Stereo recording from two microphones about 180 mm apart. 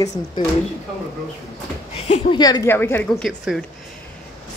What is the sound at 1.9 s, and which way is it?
A woman's voice, 35° left (ahead or behind).